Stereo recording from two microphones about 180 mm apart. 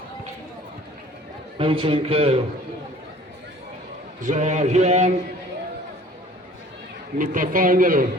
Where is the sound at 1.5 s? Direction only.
30° right (ahead or behind).